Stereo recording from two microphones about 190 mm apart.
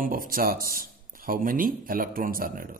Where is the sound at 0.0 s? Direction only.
50° right (ahead or behind).